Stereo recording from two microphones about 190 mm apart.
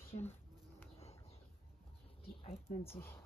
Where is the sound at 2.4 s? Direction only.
30° left (ahead or behind).